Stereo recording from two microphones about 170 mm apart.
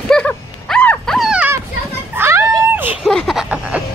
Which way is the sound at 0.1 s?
5° left (ahead or behind).